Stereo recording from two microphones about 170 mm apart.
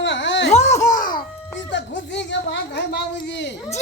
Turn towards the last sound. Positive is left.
turn(degrees=90)